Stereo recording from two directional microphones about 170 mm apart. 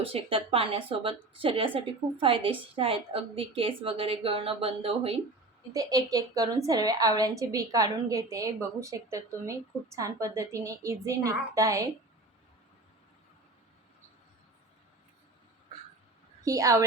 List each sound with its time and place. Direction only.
0.0 s a woman's voice: 35° right (ahead or behind)
5.7 s a woman's voice: 20° right (ahead or behind)
16.4 s a woman's voice: 20° right (ahead or behind)